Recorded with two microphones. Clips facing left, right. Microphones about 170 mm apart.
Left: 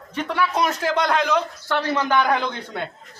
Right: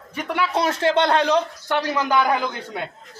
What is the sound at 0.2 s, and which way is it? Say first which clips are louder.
A man's voice: even; 20° right (ahead or behind).